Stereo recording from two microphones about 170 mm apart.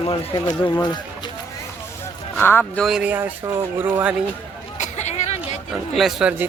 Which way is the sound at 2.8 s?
5° right (ahead or behind).